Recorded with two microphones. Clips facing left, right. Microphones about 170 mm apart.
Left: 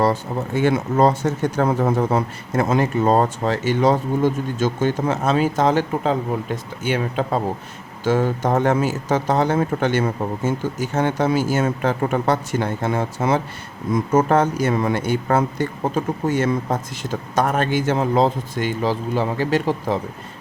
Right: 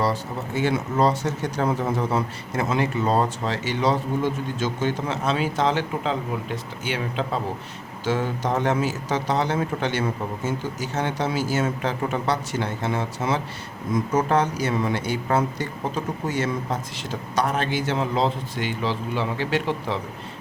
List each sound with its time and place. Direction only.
0.0 s speech: 50° left (ahead or behind)